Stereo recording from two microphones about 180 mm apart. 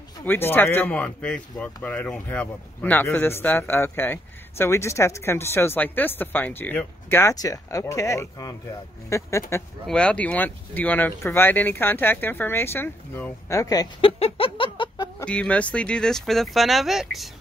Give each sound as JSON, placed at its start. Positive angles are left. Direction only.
{"t": 0.2, "sound": "a man's voice", "side_deg": 10}
{"t": 14.0, "sound": "a sound", "side_deg": 30}
{"t": 15.2, "sound": "speech", "side_deg": 5}